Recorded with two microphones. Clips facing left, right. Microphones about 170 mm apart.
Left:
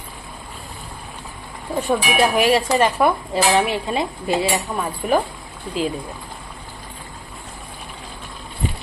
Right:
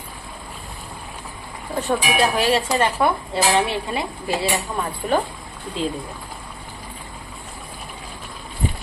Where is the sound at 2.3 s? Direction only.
15° left (ahead or behind).